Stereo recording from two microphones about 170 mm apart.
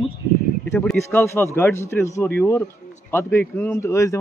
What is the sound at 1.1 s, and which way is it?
Speech, 15° left (ahead or behind).